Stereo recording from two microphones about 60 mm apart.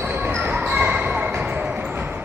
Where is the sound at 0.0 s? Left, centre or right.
Right.